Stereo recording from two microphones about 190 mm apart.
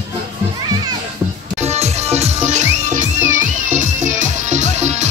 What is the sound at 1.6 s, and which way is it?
Music, 35° right (ahead or behind).